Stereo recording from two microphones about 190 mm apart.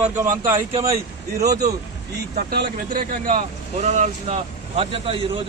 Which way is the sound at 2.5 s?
55° right (ahead or behind).